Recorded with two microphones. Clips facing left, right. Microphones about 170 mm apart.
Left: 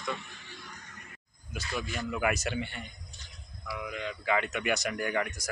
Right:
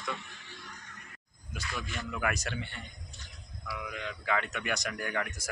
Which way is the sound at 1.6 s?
30° left (ahead or behind).